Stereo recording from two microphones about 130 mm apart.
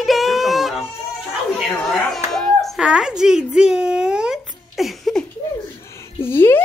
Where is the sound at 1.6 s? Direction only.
Centre (ahead or behind).